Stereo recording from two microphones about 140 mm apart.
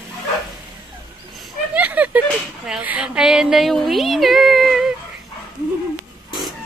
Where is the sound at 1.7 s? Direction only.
10° right (ahead or behind).